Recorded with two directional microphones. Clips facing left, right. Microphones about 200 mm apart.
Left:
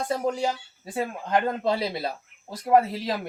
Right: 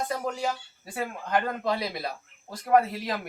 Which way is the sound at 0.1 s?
30° left (ahead or behind).